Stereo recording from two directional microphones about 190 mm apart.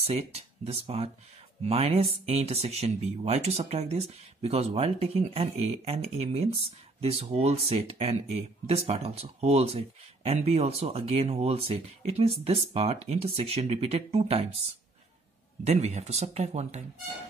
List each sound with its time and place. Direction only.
0.0 s speech: 30° right (ahead or behind)
15.6 s speech: 35° right (ahead or behind)